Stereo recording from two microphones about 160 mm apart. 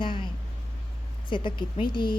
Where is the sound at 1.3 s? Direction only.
30° left (ahead or behind).